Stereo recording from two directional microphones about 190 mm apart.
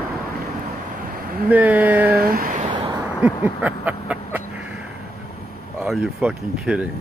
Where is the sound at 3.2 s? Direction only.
10° right (ahead or behind).